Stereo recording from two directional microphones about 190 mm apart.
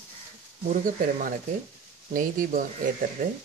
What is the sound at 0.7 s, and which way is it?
Speech, 45° right (ahead or behind).